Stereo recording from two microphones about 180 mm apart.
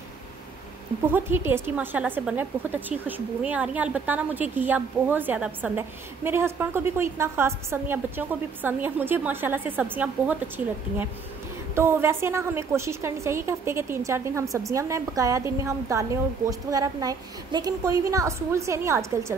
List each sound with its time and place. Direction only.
1.0 s a woman's voice: 10° right (ahead or behind)
11.7 s a woman's voice: 15° right (ahead or behind)